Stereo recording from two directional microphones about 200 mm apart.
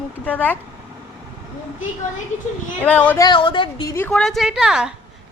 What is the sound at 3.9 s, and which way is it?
Speech, 5° left (ahead or behind).